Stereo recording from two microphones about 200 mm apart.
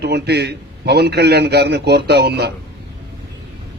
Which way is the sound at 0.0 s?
55° right (ahead or behind).